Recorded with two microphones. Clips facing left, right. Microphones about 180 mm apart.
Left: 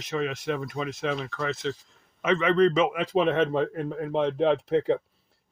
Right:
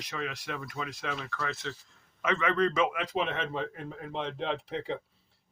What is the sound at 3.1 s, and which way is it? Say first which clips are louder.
Speech: left 9 dB; 45° left (ahead or behind).